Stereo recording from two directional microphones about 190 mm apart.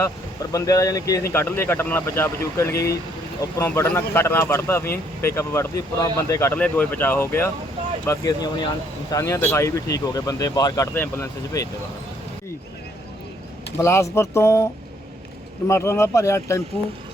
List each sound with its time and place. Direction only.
0.5 s speech: 20° left (ahead or behind)
13.7 s speech: 15° left (ahead or behind)